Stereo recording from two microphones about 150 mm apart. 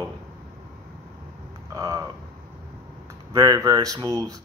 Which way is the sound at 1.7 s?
25° right (ahead or behind).